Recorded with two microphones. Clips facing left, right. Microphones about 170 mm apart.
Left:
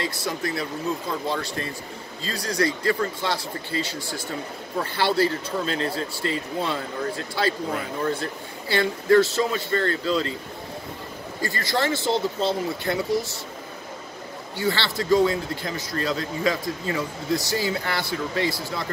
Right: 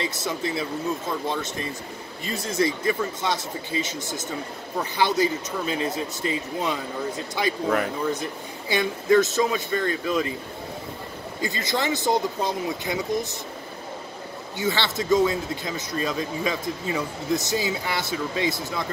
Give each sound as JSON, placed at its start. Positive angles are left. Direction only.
{"t": 0.0, "sound": "speech", "side_deg": -25}
{"t": 11.4, "sound": "speech", "side_deg": -20}
{"t": 14.6, "sound": "speech", "side_deg": -20}